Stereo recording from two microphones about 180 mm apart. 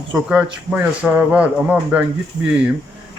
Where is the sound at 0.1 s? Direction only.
5° right (ahead or behind).